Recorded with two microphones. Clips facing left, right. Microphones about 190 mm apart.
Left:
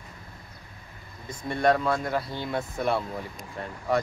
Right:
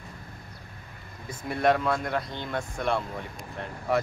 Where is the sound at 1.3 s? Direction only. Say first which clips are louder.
Left 1 dB; 5° right (ahead or behind).